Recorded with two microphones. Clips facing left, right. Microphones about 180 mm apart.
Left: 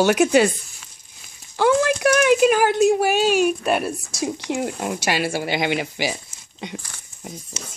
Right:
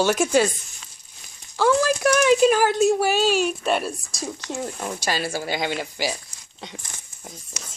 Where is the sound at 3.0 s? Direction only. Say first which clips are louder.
Left 3 dB; 55° left (ahead or behind).